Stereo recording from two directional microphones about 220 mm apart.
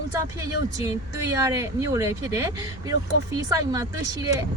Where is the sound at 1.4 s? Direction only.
15° right (ahead or behind).